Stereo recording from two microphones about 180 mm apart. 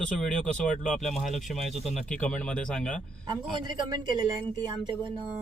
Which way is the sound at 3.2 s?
25° right (ahead or behind).